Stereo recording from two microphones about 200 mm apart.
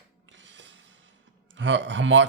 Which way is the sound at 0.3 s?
65° right (ahead or behind).